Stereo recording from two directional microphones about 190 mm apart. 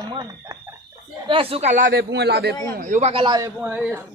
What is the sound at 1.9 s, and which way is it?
Speech, 60° right (ahead or behind).